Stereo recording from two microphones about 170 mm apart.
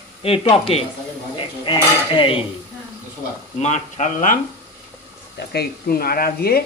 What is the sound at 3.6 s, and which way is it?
Speech, 45° left (ahead or behind).